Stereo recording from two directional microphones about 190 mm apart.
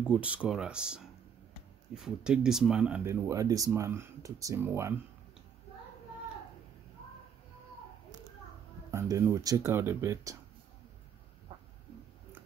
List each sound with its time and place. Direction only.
0.1 s speech: 5° right (ahead or behind)
8.9 s speech: 15° right (ahead or behind)